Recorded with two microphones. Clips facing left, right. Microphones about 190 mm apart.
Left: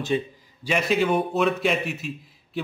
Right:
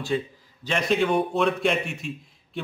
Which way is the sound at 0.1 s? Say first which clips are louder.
Left 1 dB; 20° left (ahead or behind).